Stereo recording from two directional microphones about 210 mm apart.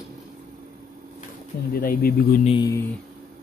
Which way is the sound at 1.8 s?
45° left (ahead or behind).